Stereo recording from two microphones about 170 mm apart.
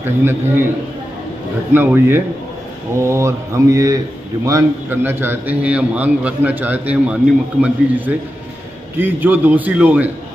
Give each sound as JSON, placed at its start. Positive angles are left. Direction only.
{"t": 0.0, "sound": "a man's voice", "side_deg": -15}
{"t": 1.7, "sound": "a man's voice", "side_deg": -10}